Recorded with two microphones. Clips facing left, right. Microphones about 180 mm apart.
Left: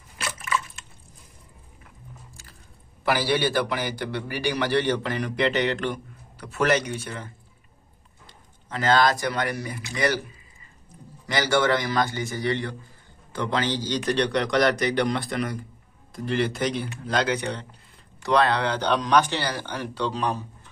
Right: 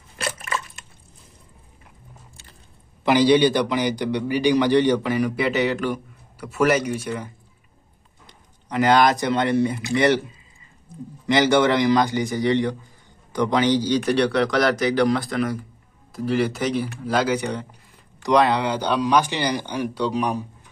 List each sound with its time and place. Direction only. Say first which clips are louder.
3.0 s a man's voice: right 8 dB; 20° right (ahead or behind)
8.3 s a man's voice: right 5 dB; 15° right (ahead or behind)
11.2 s a man's voice: right 5 dB; 20° right (ahead or behind)